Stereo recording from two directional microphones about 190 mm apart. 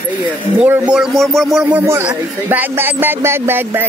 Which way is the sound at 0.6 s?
5° right (ahead or behind).